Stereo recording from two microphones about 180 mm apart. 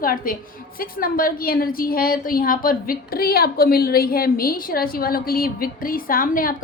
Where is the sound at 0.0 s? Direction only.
55° left (ahead or behind).